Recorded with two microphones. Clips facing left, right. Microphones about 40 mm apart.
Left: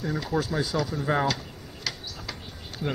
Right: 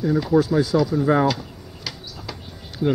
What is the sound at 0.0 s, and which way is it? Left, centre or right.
Speech, centre.